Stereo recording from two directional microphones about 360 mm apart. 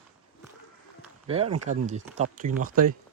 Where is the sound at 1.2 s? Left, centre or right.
Centre.